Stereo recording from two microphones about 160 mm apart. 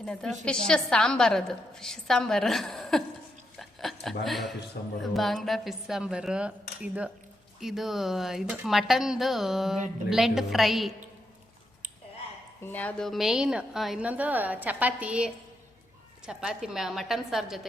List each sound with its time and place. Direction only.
0.0 s a woman's voice: 5° left (ahead or behind)
3.6 s a sound: centre (ahead or behind)
4.2 s a woman's voice: centre (ahead or behind)
4.8 s speech: 85° left
5.1 s a woman's voice: centre (ahead or behind)
12.6 s a woman's voice: 10° left (ahead or behind)